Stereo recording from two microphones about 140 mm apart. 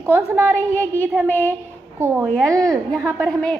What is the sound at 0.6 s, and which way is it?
Speech, 15° left (ahead or behind).